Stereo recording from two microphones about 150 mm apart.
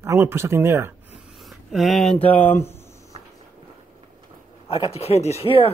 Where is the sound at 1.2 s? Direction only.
Centre (ahead or behind).